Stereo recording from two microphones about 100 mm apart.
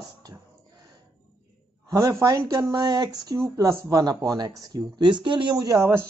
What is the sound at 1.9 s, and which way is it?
Speech, 30° right (ahead or behind).